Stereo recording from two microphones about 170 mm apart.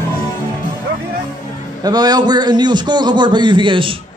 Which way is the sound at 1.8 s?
25° right (ahead or behind).